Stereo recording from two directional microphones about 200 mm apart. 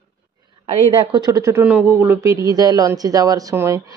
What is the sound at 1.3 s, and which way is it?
Speech, 15° right (ahead or behind).